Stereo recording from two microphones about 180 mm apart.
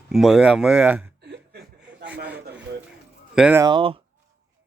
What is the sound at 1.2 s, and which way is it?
Chuckle, 70° right (ahead or behind).